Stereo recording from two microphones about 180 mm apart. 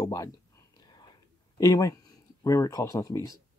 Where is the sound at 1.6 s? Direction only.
20° left (ahead or behind).